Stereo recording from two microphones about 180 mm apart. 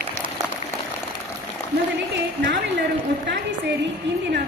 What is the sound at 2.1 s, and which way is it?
Speech, 75° right (ahead or behind).